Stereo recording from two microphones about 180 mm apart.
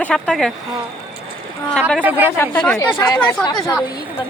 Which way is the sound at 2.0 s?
10° right (ahead or behind).